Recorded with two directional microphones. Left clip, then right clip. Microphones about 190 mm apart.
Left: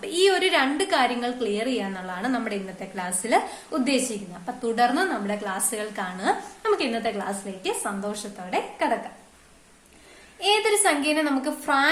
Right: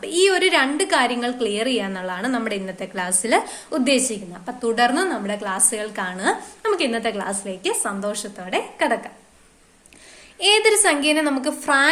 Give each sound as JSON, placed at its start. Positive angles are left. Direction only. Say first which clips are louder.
{"t": 0.0, "sound": "a woman's voice", "louder": "right 3 dB", "side_deg": -25}
{"t": 10.4, "sound": "a woman's voice", "louder": "right 5 dB", "side_deg": -35}